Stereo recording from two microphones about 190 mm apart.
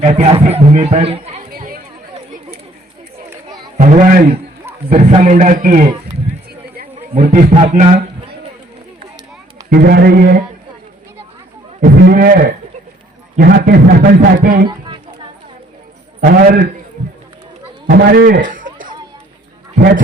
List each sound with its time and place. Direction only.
0.0 s a man's voice: 35° right (ahead or behind)
1.5 s chatter: 50° right (ahead or behind)
3.8 s a man's voice: 45° right (ahead or behind)
7.2 s a man's voice: 45° right (ahead or behind)
9.6 s a man's voice: 55° right (ahead or behind)
11.8 s a man's voice: 55° right (ahead or behind)
14.7 s a sound: 25° right (ahead or behind)
16.2 s a man's voice: 45° right (ahead or behind)
17.8 s a man's voice: 55° right (ahead or behind)